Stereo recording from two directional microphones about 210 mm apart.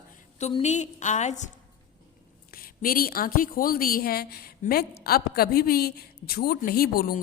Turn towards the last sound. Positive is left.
turn(degrees=45)  # may be behind; listen again after turning